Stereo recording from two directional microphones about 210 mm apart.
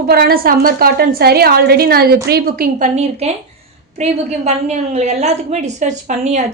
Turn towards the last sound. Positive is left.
turn(degrees=-35)  # may be behind; listen again after turning